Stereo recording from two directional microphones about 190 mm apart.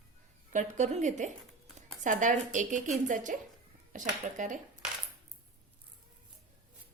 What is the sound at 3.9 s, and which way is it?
Speech, 40° right (ahead or behind).